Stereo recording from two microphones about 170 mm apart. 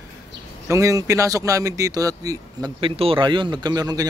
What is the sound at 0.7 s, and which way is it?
A man's voice, 20° right (ahead or behind).